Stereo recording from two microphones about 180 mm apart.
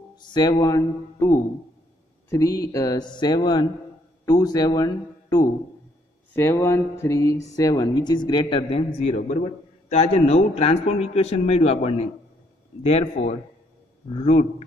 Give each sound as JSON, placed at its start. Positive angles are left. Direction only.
{"t": 0.2, "sound": "speech", "side_deg": 25}